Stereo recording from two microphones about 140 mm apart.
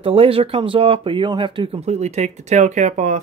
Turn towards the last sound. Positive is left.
turn(degrees=-60)  # may be behind; listen again after turning